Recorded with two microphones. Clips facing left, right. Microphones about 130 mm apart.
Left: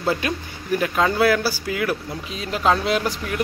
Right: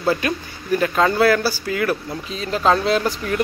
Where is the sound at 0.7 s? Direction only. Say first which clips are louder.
Right 2 dB; 10° left (ahead or behind).